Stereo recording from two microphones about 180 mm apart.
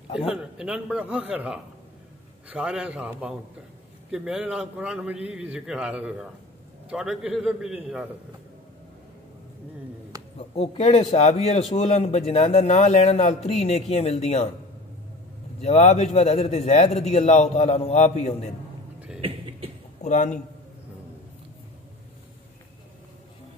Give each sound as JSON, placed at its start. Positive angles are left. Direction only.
{"t": 0.2, "sound": "a man's voice", "side_deg": -5}
{"t": 10.1, "sound": "a sound", "side_deg": -20}
{"t": 10.6, "sound": "a man's voice", "side_deg": 35}
{"t": 15.6, "sound": "a man's voice", "side_deg": 35}
{"t": 18.9, "sound": "cough", "side_deg": -5}
{"t": 20.0, "sound": "a man's voice", "side_deg": 40}